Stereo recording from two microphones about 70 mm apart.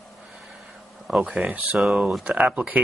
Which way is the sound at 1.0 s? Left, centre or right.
Centre.